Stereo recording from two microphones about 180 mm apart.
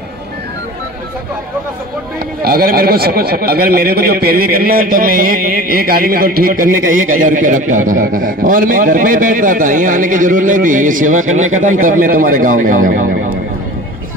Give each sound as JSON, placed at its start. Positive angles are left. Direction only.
{"t": 2.4, "sound": "a man's voice", "side_deg": -55}